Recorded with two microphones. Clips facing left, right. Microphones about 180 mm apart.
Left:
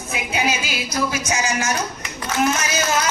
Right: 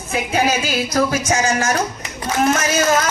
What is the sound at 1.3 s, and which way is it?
Speech, 35° right (ahead or behind).